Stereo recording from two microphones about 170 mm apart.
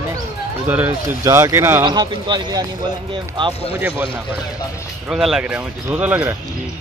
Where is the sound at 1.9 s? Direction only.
25° right (ahead or behind).